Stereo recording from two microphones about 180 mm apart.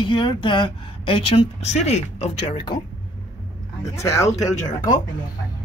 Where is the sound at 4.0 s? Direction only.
15° left (ahead or behind).